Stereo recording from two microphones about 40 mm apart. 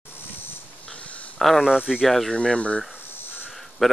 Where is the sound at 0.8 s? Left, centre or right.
Left.